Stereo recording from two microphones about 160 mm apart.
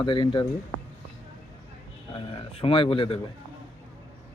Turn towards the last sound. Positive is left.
turn(degrees=35)  # may be behind; listen again after turning